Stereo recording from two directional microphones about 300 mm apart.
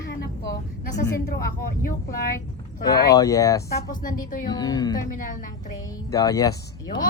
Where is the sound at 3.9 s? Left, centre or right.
Left.